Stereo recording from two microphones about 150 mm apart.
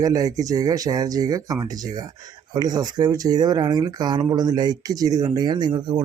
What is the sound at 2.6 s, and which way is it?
Speech, 25° right (ahead or behind).